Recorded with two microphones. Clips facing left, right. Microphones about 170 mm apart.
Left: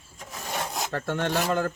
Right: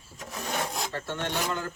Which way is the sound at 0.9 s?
50° left (ahead or behind).